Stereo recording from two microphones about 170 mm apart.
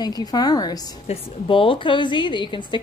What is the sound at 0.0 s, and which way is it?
A woman's voice, 20° left (ahead or behind).